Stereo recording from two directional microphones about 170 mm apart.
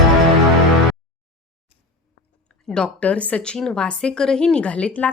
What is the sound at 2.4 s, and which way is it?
A woman's voice, 5° left (ahead or behind).